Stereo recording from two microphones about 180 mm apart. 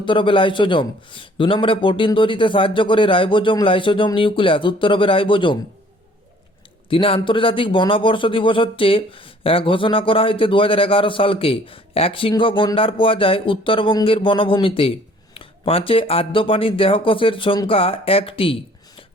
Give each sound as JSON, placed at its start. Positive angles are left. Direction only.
{"t": 0.0, "sound": "speech", "side_deg": 25}
{"t": 6.9, "sound": "speech", "side_deg": 30}